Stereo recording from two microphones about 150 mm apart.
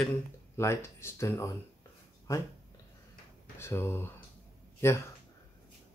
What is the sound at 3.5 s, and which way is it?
Speech, 15° left (ahead or behind).